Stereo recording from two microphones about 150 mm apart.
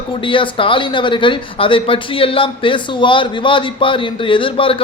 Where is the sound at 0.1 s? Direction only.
35° left (ahead or behind).